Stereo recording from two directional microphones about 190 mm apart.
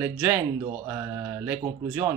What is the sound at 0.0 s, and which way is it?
Speech, 10° right (ahead or behind).